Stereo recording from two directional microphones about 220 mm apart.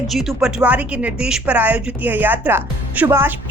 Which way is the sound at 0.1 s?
Centre (ahead or behind).